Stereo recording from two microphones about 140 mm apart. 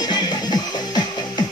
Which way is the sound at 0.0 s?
30° left (ahead or behind).